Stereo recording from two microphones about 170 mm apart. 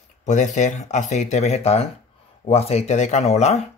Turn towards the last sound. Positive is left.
turn(degrees=40)  # may be behind; listen again after turning